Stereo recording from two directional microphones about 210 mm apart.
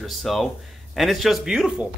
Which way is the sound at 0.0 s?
Centre (ahead or behind).